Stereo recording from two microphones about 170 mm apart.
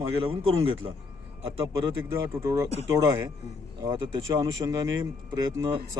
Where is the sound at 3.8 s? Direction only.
20° right (ahead or behind).